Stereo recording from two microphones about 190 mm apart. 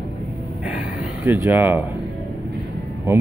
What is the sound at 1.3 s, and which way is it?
Speech, 10° right (ahead or behind).